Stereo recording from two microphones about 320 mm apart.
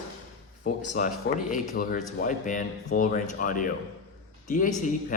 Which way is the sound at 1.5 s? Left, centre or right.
Left.